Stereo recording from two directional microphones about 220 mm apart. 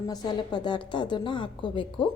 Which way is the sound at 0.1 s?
20° left (ahead or behind).